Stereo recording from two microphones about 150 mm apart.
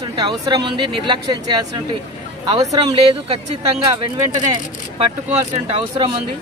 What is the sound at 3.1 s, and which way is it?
Speech, 40° right (ahead or behind).